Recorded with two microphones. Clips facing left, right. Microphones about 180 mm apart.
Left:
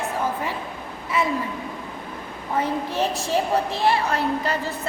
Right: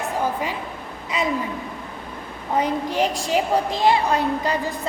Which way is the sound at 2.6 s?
15° right (ahead or behind).